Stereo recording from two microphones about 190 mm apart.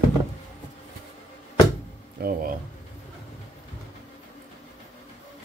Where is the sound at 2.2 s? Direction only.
50° right (ahead or behind).